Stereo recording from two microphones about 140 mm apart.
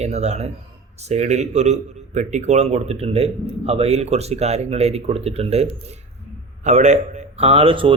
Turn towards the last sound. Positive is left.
turn(degrees=-40)  # may be behind; listen again after turning